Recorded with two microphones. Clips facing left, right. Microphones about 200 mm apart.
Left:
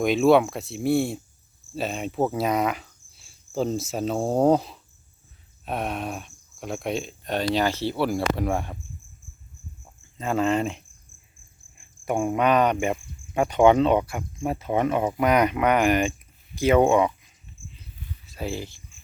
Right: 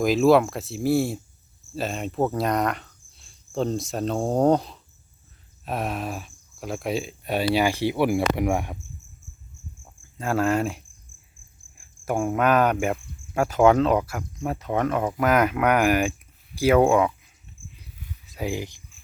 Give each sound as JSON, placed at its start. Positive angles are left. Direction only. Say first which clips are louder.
{"t": 0.0, "sound": "speech", "louder": "even", "side_deg": 0}
{"t": 10.2, "sound": "speech", "louder": "even", "side_deg": -5}
{"t": 12.0, "sound": "speech", "louder": "even", "side_deg": 0}
{"t": 17.6, "sound": "a sound", "louder": "left 1 dB", "side_deg": -55}
{"t": 18.3, "sound": "speech", "louder": "right 2 dB", "side_deg": -15}